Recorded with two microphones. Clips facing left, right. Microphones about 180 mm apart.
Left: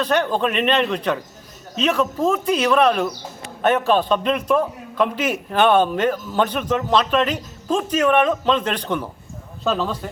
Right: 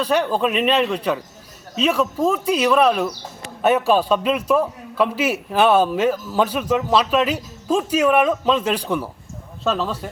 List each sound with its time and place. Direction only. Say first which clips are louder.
0.0 s a man's voice: right 1 dB; 5° right (ahead or behind)